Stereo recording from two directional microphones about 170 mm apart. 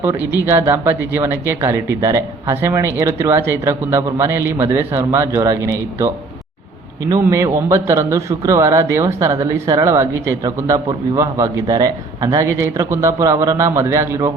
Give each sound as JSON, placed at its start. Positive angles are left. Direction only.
{"t": 0.4, "sound": "speech", "side_deg": -15}
{"t": 7.1, "sound": "a man's voice", "side_deg": -20}